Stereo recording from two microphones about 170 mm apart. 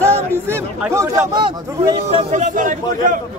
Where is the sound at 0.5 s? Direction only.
15° right (ahead or behind).